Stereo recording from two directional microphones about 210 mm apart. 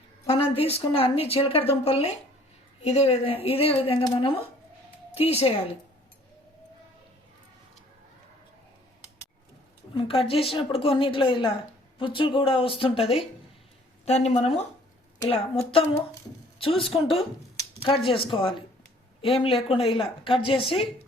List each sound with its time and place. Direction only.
0.5 s speech: 25° left (ahead or behind)
9.9 s speech: 25° left (ahead or behind)